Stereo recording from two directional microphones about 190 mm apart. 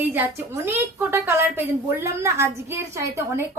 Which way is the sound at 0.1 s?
10° right (ahead or behind).